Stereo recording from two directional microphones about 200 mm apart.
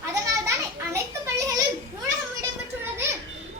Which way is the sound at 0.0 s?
15° right (ahead or behind).